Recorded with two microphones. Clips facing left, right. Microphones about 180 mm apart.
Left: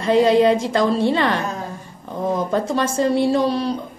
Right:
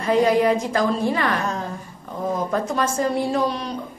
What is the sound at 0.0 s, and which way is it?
A woman's voice, 30° left (ahead or behind).